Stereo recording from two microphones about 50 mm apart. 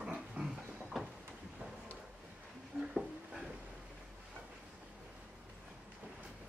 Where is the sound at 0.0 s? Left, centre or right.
Centre.